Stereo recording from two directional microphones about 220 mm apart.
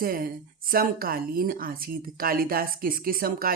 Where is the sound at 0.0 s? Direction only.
40° right (ahead or behind).